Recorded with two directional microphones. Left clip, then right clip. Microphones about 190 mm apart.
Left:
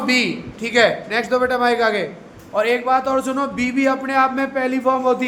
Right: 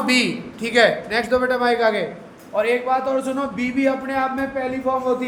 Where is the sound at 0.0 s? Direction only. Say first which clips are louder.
Left 1 dB; 10° left (ahead or behind).